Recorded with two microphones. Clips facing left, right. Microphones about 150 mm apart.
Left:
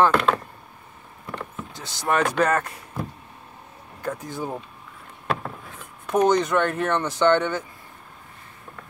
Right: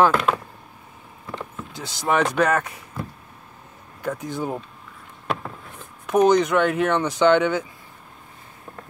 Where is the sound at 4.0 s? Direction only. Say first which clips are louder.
Right 3 dB; centre (ahead or behind).